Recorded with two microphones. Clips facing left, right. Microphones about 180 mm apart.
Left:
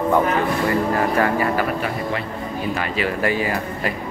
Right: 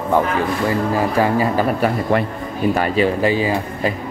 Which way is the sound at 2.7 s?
40° right (ahead or behind).